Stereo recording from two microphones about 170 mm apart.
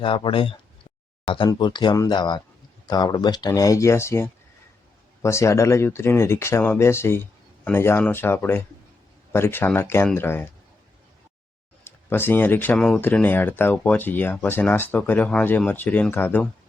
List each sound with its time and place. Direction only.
0.0 s speech: 30° left (ahead or behind); by 10.5 s 15° left (ahead or behind)
11.9 s speech: 15° left (ahead or behind)